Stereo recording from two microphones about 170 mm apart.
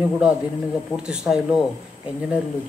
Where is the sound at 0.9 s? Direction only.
5° right (ahead or behind).